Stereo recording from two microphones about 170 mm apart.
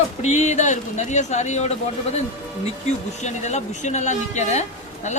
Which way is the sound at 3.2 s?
45° left (ahead or behind).